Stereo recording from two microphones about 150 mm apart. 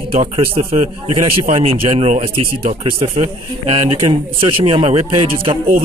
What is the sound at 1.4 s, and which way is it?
Speech, 50° right (ahead or behind).